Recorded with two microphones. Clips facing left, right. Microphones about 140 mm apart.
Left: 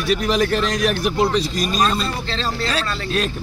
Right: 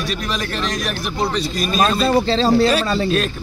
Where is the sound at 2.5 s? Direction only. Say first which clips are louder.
Right 8 dB; 10° right (ahead or behind).